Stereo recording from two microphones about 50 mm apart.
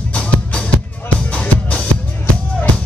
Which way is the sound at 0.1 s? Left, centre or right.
Left.